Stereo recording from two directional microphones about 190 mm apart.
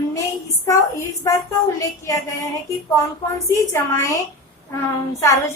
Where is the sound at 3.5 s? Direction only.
15° left (ahead or behind).